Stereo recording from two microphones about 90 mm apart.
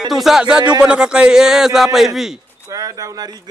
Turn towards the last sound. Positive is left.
turn(degrees=-40)  # may be behind; listen again after turning